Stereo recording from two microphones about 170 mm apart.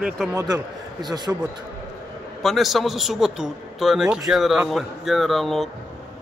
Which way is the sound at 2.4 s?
Centre (ahead or behind).